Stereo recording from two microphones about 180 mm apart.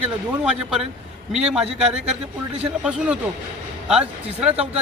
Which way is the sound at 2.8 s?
5° right (ahead or behind).